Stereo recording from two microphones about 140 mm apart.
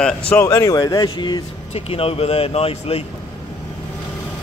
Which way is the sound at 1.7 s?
45° left (ahead or behind).